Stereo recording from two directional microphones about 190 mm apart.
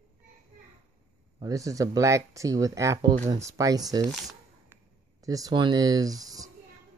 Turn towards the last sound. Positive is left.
turn(degrees=-20)  # may be behind; listen again after turning